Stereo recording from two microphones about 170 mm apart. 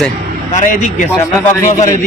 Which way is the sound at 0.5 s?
50° left (ahead or behind).